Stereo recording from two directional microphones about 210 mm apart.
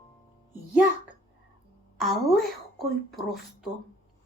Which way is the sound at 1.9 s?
Centre (ahead or behind).